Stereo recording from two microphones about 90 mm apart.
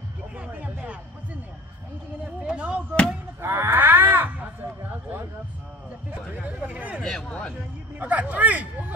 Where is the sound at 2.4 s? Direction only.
10° right (ahead or behind).